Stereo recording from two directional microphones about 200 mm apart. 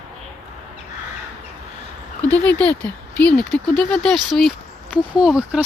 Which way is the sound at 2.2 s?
10° left (ahead or behind).